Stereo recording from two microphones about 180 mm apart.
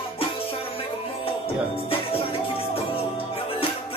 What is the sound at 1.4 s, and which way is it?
Music, 30° left (ahead or behind).